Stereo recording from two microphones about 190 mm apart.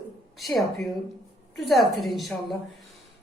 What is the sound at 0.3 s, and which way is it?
A woman's voice, centre (ahead or behind).